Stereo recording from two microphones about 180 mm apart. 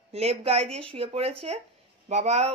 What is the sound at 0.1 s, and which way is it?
Speech, 35° right (ahead or behind).